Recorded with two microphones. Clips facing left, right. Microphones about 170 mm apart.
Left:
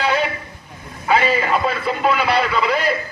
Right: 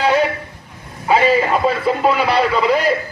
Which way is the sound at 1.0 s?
35° right (ahead or behind).